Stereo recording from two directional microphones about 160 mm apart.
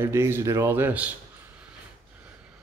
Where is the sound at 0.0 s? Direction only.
15° right (ahead or behind).